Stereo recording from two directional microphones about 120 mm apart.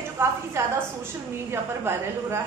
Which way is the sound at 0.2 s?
20° right (ahead or behind).